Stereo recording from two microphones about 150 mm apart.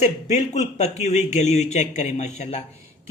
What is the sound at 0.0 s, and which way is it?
Speech, 50° left (ahead or behind).